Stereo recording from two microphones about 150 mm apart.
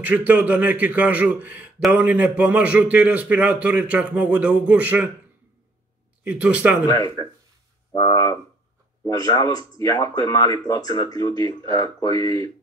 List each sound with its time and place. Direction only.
0.0 s a man's voice: 10° right (ahead or behind)
6.2 s a man's voice: 10° right (ahead or behind)
6.9 s speech: 25° left (ahead or behind)